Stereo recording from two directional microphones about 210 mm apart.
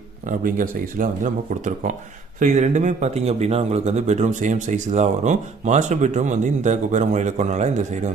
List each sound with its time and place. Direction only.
0.3 s speech: 40° right (ahead or behind)